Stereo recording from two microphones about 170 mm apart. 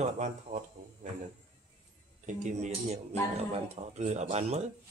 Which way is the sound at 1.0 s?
45° right (ahead or behind).